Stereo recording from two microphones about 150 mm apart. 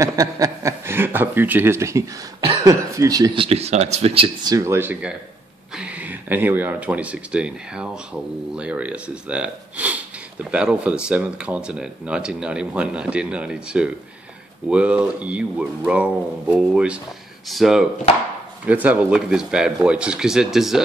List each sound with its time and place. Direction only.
0.0 s speech: 25° right (ahead or behind)
3.3 s speech: 40° right (ahead or behind)
4.5 s speech: 20° right (ahead or behind); by 20.8 s 5° right (ahead or behind)